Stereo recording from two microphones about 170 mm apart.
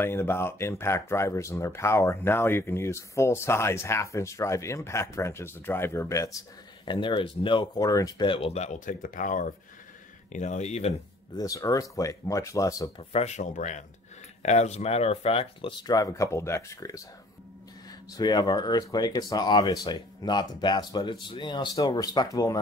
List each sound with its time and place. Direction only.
0.0 s speech: 15° left (ahead or behind)
6.9 s speech: 30° left (ahead or behind)
11.3 s speech: 20° left (ahead or behind)
13.1 s speech: 40° left (ahead or behind)
15.9 s speech: 20° left (ahead or behind)
18.1 s speech: 25° left (ahead or behind)